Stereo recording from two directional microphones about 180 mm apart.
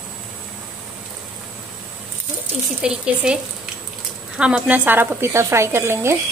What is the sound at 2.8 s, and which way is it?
Speech, 5° right (ahead or behind).